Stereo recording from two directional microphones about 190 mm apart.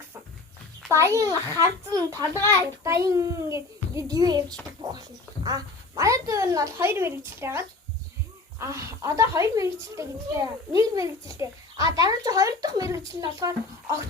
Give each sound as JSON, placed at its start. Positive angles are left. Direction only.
{"t": 0.9, "sound": "a child's voice", "side_deg": -15}